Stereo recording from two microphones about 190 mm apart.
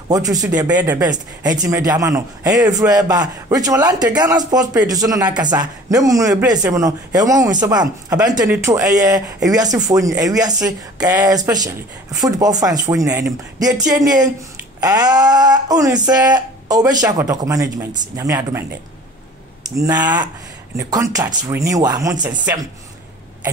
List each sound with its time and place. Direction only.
0.1 s a man's voice: 20° right (ahead or behind)
1.0 s a man's voice: 20° right (ahead or behind)
19.8 s a man's voice: 20° right (ahead or behind)